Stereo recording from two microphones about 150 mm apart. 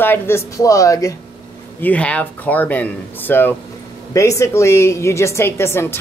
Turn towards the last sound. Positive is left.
turn(degrees=15)  # may be behind; listen again after turning